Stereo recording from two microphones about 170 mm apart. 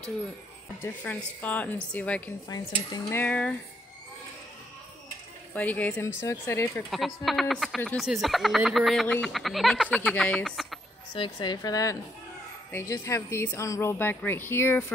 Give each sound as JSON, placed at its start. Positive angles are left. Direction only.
{"t": 1.0, "sound": "speech", "side_deg": 10}
{"t": 2.4, "sound": "a woman's voice", "side_deg": 25}
{"t": 3.2, "sound": "speech", "side_deg": 10}
{"t": 5.5, "sound": "speech", "side_deg": 10}
{"t": 6.9, "sound": "speech", "side_deg": 0}
{"t": 11.1, "sound": "a woman's voice", "side_deg": 25}